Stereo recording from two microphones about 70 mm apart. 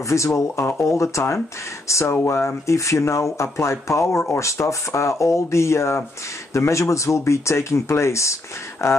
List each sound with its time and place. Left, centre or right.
0.1 s speech: left